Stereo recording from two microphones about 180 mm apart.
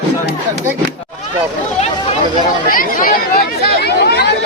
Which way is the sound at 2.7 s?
50° left (ahead or behind).